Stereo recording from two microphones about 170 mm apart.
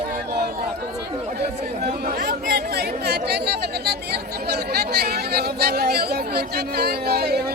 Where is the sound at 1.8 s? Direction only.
65° right (ahead or behind).